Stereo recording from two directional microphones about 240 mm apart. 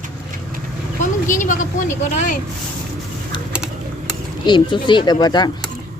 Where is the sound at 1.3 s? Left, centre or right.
Left.